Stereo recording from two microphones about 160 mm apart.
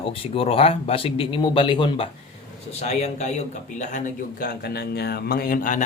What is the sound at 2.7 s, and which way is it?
Speech, 40° left (ahead or behind).